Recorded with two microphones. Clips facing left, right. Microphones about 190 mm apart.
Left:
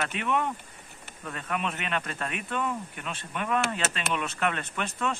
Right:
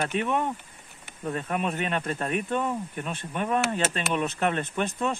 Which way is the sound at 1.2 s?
35° right (ahead or behind).